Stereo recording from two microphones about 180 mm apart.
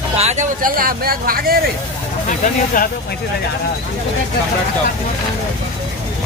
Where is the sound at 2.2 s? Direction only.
45° left (ahead or behind).